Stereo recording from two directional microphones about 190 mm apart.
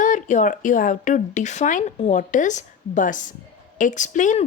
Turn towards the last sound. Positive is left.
turn(degrees=40)  # may be behind; listen again after turning